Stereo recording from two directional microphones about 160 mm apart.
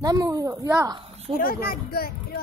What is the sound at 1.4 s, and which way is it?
Speech, 65° left (ahead or behind).